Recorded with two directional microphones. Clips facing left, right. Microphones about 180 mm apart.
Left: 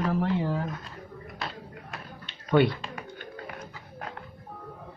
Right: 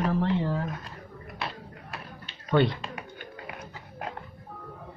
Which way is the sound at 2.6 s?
10° left (ahead or behind).